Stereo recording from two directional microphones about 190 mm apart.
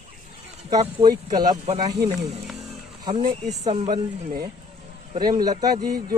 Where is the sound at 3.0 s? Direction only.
25° right (ahead or behind).